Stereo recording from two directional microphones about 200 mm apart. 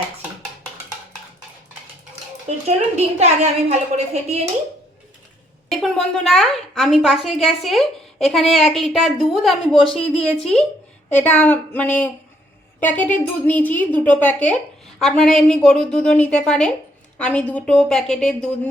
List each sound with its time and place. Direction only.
2.6 s a woman's voice: 35° right (ahead or behind)
5.8 s a woman's voice: centre (ahead or behind)